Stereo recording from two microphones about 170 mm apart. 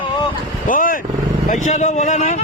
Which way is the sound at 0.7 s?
55° left (ahead or behind).